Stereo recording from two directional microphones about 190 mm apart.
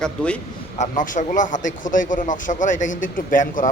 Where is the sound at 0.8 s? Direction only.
45° left (ahead or behind).